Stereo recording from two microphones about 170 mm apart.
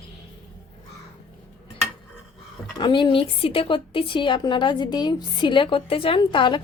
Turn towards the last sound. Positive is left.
turn(degrees=30)  # may be behind; listen again after turning